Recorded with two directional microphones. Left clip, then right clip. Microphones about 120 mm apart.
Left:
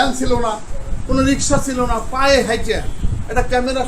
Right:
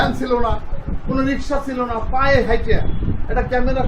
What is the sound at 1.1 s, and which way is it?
A man's voice, 35° left (ahead or behind).